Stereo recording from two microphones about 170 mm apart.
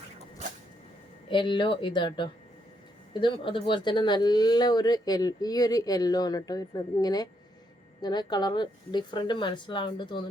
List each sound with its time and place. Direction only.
1.3 s speech: 30° left (ahead or behind)